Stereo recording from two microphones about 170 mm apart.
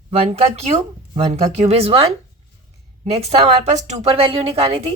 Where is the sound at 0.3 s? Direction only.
40° right (ahead or behind).